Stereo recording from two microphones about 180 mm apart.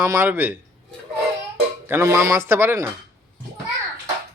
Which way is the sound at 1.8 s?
15° right (ahead or behind).